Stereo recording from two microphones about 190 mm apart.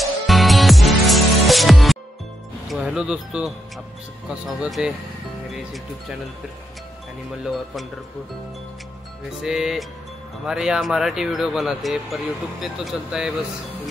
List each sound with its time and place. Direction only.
0.0 s music: centre (ahead or behind)
2.7 s speech: 5° right (ahead or behind)
7.4 s speech: centre (ahead or behind)
9.4 s speech: centre (ahead or behind)